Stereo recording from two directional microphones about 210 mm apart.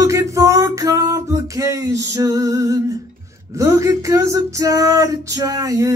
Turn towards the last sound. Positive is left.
turn(degrees=-15)  # may be behind; listen again after turning